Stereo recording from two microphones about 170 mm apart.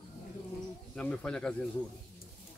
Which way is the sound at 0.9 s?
5° left (ahead or behind).